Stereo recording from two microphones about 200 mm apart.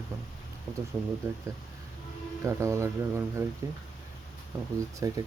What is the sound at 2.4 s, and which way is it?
Speech, 15° right (ahead or behind).